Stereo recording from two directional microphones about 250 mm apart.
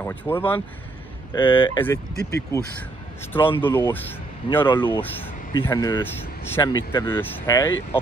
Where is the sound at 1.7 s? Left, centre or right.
Centre.